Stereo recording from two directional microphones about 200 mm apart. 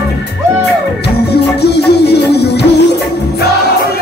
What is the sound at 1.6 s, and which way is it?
Music, 55° left (ahead or behind).